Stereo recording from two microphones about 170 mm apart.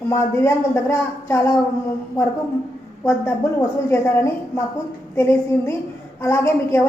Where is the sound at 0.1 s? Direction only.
15° left (ahead or behind).